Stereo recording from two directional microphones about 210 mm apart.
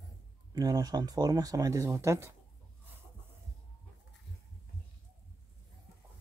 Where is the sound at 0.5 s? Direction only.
20° right (ahead or behind).